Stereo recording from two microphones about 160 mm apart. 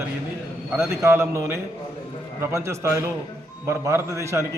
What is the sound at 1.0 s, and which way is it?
A man's voice, 15° right (ahead or behind).